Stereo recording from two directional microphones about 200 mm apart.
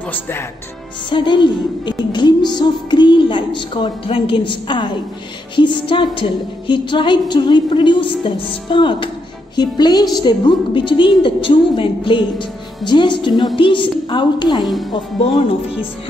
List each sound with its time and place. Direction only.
0.1 s speech: 10° left (ahead or behind)
1.1 s music: 25° left (ahead or behind)
14.6 s speech: centre (ahead or behind)